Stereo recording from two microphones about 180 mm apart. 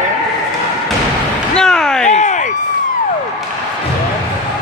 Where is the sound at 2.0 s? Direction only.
40° left (ahead or behind).